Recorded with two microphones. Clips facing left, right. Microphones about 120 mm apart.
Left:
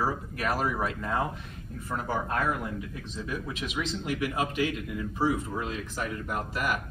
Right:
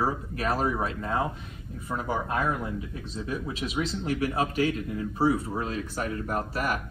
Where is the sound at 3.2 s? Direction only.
30° right (ahead or behind).